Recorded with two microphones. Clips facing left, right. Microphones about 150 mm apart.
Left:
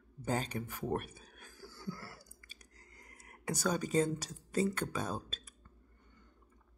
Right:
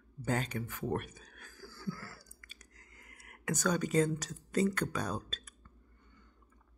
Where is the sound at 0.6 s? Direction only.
10° left (ahead or behind).